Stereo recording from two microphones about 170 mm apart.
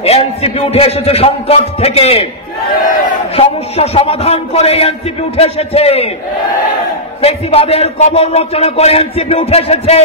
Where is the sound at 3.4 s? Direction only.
35° left (ahead or behind).